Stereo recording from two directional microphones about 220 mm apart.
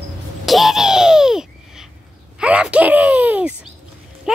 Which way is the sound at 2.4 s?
5° right (ahead or behind).